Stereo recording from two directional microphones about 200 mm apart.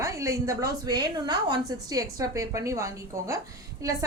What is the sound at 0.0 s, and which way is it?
A woman's voice, 15° right (ahead or behind).